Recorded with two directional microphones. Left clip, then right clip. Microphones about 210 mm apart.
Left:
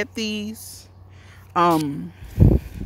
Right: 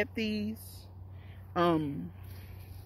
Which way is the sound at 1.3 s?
25° left (ahead or behind).